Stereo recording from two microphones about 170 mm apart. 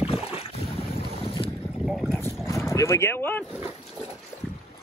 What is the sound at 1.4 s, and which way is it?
Boat, 30° left (ahead or behind).